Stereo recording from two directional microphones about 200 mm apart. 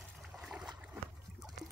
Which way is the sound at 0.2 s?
Centre (ahead or behind).